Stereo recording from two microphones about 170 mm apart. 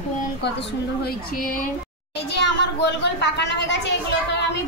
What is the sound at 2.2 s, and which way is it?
Speech, 90° left.